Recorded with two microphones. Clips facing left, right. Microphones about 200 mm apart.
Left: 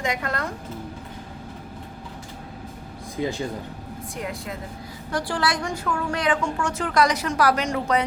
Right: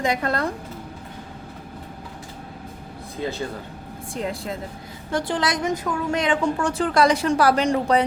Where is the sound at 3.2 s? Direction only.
15° left (ahead or behind).